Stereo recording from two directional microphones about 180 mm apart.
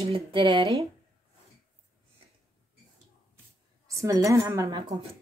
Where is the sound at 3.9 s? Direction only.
15° right (ahead or behind).